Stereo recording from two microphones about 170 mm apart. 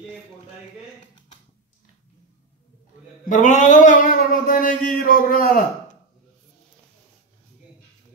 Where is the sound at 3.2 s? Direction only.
50° left (ahead or behind).